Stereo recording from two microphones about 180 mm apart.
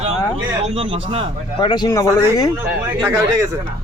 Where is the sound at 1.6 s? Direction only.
25° left (ahead or behind).